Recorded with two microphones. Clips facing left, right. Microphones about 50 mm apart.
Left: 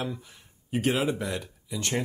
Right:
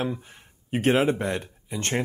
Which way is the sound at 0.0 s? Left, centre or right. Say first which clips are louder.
Right 5 dB; right.